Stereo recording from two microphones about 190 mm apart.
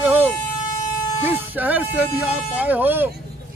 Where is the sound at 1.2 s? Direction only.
10° right (ahead or behind).